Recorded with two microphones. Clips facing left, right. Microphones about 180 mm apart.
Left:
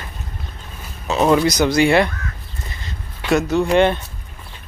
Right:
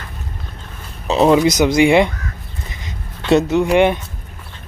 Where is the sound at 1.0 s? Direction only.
20° right (ahead or behind).